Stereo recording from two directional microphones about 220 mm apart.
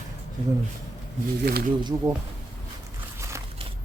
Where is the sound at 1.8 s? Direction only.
20° right (ahead or behind).